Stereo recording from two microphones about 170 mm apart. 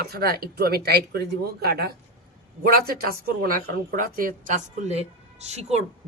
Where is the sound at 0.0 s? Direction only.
65° right (ahead or behind).